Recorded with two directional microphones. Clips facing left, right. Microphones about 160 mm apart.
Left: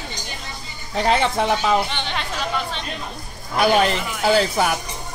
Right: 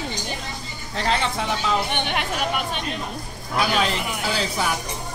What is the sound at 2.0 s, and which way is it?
Speech, 15° right (ahead or behind).